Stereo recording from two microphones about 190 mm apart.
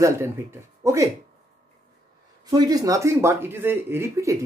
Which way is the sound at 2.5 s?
20° right (ahead or behind).